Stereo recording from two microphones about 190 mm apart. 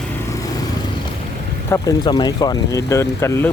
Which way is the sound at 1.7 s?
20° left (ahead or behind).